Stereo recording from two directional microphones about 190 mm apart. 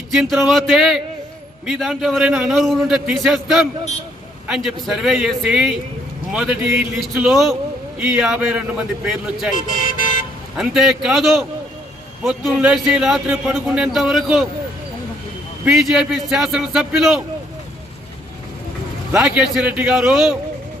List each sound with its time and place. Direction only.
0.1 s a man's voice: centre (ahead or behind)
9.6 s speech: 45° left (ahead or behind)
10.6 s a man's voice: centre (ahead or behind)
15.6 s a man's voice: 5° right (ahead or behind)
19.1 s a man's voice: 5° right (ahead or behind)